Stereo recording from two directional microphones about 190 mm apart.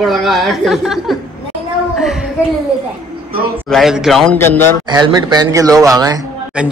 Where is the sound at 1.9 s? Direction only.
Centre (ahead or behind).